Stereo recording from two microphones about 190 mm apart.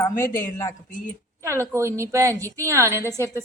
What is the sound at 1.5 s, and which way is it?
A woman's voice, 15° right (ahead or behind).